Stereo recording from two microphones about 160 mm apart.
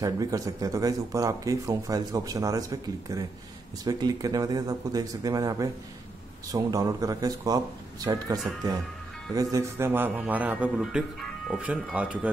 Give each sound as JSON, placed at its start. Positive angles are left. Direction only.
{"t": 0.0, "sound": "a man's voice", "side_deg": -20}